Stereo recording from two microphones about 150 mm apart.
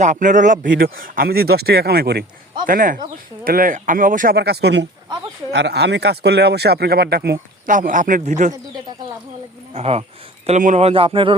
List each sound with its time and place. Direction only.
0.0 s speech: 55° right (ahead or behind); by 2.2 s 90° right
2.6 s speech: 65° right (ahead or behind)
9.7 s speech: 40° right (ahead or behind)